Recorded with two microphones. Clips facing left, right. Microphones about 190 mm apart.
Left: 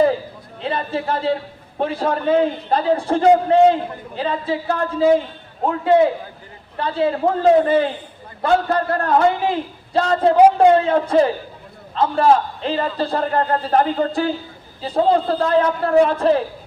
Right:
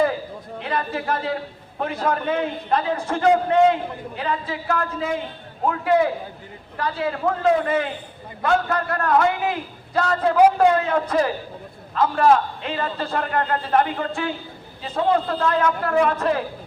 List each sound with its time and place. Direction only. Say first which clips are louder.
0.6 s a man's voice: left 3 dB; 30° left (ahead or behind)